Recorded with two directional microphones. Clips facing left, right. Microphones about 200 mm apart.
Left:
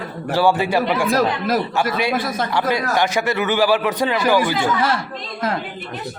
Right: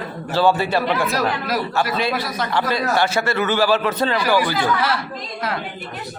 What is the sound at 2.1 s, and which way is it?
Speech, 50° left (ahead or behind).